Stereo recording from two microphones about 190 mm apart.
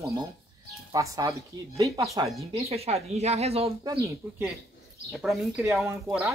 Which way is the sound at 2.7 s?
35° right (ahead or behind).